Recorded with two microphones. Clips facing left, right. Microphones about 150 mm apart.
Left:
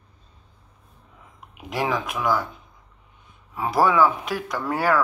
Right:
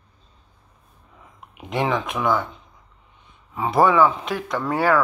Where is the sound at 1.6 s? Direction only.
5° left (ahead or behind).